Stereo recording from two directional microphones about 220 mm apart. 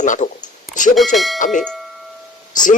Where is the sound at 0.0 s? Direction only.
35° left (ahead or behind).